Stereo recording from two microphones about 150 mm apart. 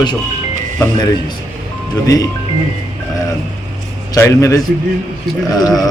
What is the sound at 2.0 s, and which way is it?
Speech, 25° left (ahead or behind).